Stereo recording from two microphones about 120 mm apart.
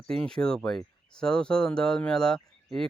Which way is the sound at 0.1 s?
5° left (ahead or behind).